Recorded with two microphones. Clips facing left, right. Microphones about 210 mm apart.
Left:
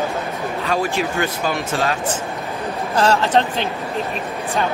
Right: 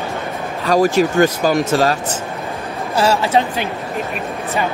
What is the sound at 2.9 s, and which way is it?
Speech, 10° right (ahead or behind).